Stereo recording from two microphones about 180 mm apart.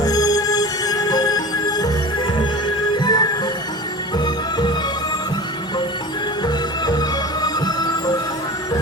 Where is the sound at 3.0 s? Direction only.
25° left (ahead or behind).